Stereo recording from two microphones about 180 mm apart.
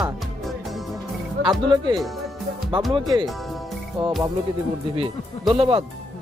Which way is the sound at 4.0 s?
Centre (ahead or behind).